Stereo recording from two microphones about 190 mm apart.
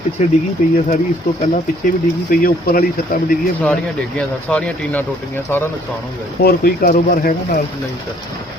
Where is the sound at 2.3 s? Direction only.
50° left (ahead or behind).